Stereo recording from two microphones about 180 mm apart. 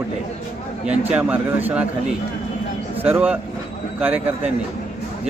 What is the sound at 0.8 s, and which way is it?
Speech, 5° right (ahead or behind).